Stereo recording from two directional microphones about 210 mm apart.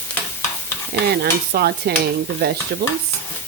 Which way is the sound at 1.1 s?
50° right (ahead or behind).